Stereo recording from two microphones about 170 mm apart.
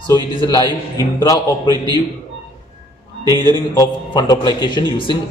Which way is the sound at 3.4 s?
25° left (ahead or behind).